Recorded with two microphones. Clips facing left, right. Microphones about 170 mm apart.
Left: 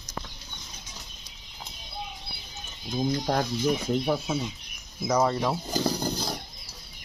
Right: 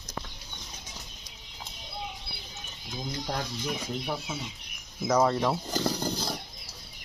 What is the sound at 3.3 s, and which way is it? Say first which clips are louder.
Speech: left 6 dB; 50° left (ahead or behind).